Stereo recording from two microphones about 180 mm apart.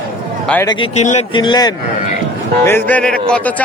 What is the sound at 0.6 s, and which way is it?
Speech, 25° left (ahead or behind).